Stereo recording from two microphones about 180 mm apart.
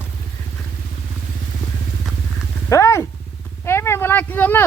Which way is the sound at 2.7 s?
15° left (ahead or behind).